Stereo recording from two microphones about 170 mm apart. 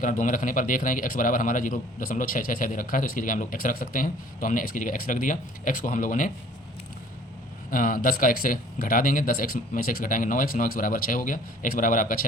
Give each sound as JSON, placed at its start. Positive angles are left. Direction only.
{"t": 0.0, "sound": "a man's voice", "side_deg": 50}
{"t": 7.7, "sound": "speech", "side_deg": 55}